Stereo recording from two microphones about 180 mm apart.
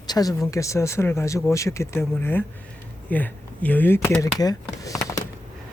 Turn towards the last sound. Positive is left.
turn(degrees=15)  # may be behind; listen again after turning